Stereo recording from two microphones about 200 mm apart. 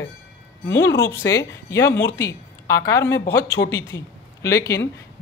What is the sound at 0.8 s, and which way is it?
A woman's voice, 15° left (ahead or behind).